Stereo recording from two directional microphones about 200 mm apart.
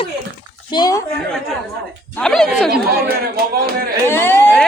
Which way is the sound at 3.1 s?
50° right (ahead or behind).